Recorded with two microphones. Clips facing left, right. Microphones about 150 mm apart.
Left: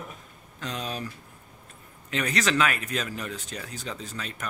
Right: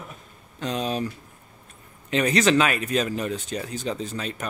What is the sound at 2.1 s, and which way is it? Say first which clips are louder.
Speech: right 7 dB; 20° right (ahead or behind).